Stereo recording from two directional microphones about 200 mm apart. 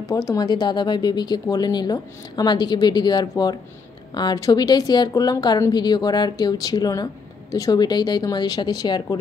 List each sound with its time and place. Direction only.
0.1 s speech: 15° left (ahead or behind)